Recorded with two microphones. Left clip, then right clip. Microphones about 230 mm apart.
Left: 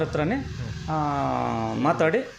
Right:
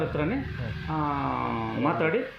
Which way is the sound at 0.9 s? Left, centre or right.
Left.